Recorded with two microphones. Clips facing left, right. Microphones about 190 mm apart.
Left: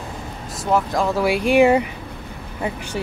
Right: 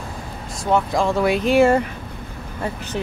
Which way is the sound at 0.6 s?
Centre (ahead or behind).